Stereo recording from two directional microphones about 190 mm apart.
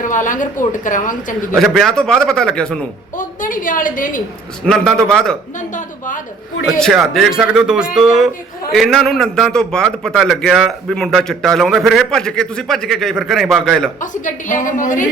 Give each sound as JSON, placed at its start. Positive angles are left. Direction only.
{"t": 0.0, "sound": "a woman's voice", "side_deg": 45}
{"t": 1.5, "sound": "a man's voice", "side_deg": 0}
{"t": 3.2, "sound": "a woman's voice", "side_deg": 45}
{"t": 4.6, "sound": "a man's voice", "side_deg": 5}
{"t": 5.5, "sound": "a woman's voice", "side_deg": 40}
{"t": 6.7, "sound": "a man's voice", "side_deg": 0}
{"t": 14.0, "sound": "a woman's voice", "side_deg": 40}